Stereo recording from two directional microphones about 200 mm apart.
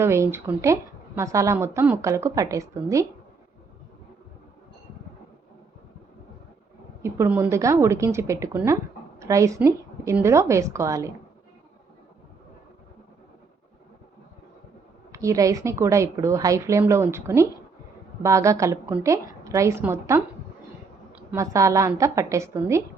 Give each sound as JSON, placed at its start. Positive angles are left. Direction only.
{"t": 0.0, "sound": "a woman's voice", "side_deg": -15}
{"t": 7.0, "sound": "a woman's voice", "side_deg": -10}
{"t": 15.1, "sound": "a woman's voice", "side_deg": -15}